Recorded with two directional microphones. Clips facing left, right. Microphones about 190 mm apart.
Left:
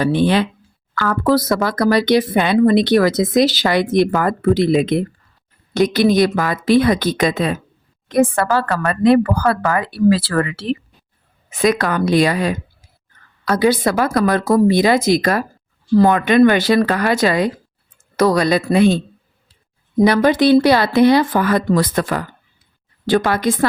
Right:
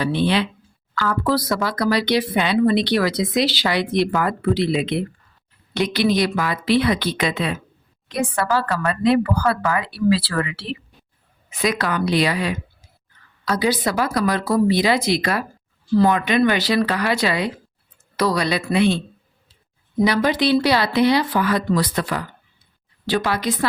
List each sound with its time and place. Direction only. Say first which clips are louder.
0.0 s speech: left 4 dB; 45° left (ahead or behind)